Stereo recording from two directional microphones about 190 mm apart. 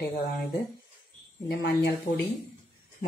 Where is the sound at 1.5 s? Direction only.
60° left (ahead or behind).